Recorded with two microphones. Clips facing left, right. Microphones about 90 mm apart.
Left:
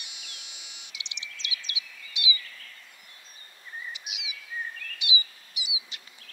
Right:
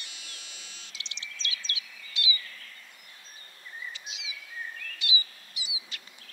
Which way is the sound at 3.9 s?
15° left (ahead or behind).